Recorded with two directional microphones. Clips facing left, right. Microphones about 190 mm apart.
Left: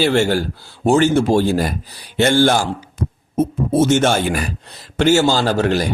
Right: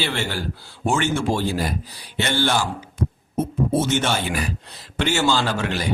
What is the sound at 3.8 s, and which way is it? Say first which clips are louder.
Speech: left 9 dB; 50° left (ahead or behind).